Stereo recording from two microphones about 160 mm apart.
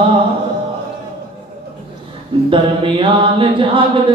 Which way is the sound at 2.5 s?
30° right (ahead or behind).